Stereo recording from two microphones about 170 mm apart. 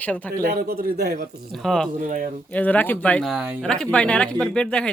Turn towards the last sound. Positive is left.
turn(degrees=5)  # may be behind; listen again after turning